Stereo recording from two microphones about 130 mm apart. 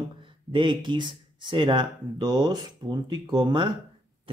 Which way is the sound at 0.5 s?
40° right (ahead or behind).